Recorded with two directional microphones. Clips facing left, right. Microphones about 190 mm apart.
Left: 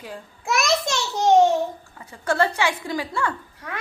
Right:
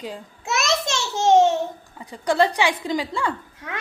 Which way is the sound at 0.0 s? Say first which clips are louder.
Right 2 dB; 20° right (ahead or behind).